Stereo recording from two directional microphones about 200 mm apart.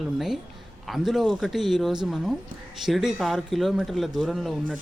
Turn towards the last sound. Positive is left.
turn(degrees=0)  # may be behind; listen again after turning